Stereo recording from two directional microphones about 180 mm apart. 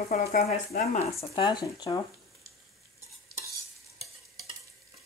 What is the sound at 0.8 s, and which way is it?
Speech, 35° left (ahead or behind).